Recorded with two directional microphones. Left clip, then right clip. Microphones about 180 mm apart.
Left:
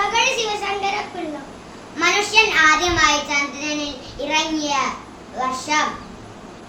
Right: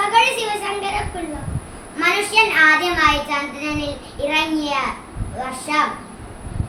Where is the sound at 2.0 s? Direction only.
10° left (ahead or behind).